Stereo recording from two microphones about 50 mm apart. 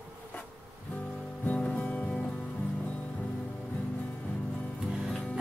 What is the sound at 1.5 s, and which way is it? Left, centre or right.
Music, left.